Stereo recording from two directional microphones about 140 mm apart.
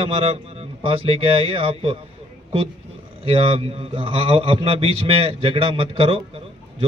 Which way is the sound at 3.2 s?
45° right (ahead or behind).